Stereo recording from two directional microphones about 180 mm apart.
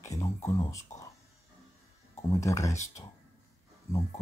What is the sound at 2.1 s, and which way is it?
Speech, 15° left (ahead or behind).